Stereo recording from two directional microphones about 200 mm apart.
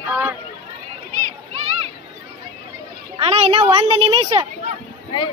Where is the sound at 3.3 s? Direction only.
30° right (ahead or behind).